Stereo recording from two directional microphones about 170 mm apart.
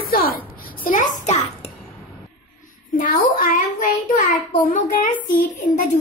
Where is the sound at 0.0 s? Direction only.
60° left (ahead or behind).